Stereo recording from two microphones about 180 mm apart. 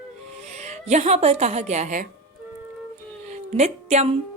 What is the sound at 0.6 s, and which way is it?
Speech, 40° right (ahead or behind).